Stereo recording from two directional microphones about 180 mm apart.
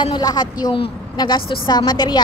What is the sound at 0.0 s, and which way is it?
A woman's voice, 25° left (ahead or behind).